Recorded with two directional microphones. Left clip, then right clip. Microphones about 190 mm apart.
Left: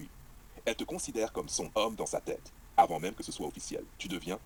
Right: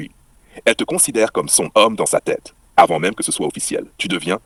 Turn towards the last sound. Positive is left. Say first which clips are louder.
# right 18 dB
turn(degrees=-45)  # may be behind; listen again after turning